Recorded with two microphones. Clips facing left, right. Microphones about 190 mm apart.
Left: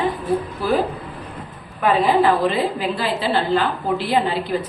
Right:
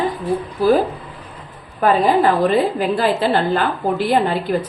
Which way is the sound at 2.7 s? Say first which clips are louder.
Right 5 dB; 45° right (ahead or behind).